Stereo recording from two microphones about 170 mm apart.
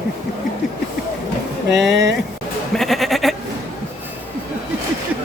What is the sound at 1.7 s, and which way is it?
Speech, 90° right.